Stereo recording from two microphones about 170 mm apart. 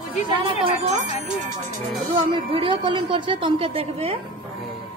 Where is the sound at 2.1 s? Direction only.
30° right (ahead or behind).